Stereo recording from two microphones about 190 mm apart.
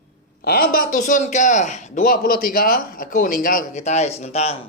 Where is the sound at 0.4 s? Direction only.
50° left (ahead or behind); by 4.7 s 35° left (ahead or behind).